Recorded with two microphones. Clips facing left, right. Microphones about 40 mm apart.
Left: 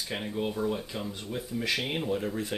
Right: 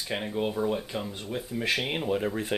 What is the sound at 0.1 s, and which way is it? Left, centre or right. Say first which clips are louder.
Speech: right 3 dB; centre.